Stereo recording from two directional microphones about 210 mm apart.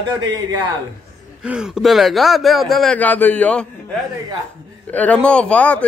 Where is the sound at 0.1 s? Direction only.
15° right (ahead or behind).